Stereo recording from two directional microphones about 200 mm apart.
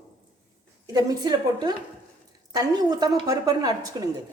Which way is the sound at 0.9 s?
20° right (ahead or behind).